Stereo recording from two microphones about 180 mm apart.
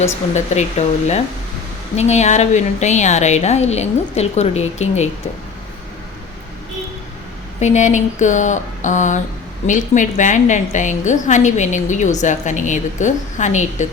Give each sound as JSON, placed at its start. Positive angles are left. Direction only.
{"t": 0.0, "sound": "speech", "side_deg": 40}
{"t": 7.6, "sound": "a woman's voice", "side_deg": 40}